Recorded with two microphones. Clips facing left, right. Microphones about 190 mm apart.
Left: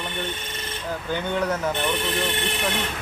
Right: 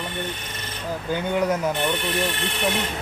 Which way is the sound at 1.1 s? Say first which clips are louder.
Right 3 dB; 10° right (ahead or behind).